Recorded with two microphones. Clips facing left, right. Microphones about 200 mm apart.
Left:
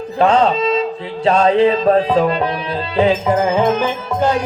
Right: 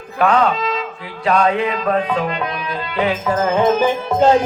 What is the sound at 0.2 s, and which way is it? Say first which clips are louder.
Speech: left 2 dB; 25° left (ahead or behind).